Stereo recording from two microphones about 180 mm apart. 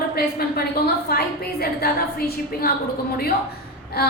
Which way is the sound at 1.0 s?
60° left (ahead or behind).